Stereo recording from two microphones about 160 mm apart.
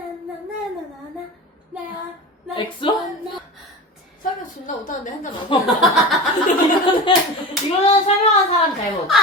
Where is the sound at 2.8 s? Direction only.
30° left (ahead or behind).